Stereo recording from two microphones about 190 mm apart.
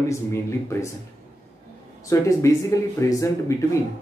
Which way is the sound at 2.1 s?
15° left (ahead or behind).